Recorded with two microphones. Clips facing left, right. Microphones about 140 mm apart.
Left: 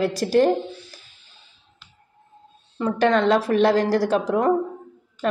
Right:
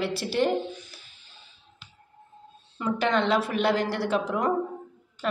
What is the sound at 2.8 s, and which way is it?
A woman's voice, 40° left (ahead or behind).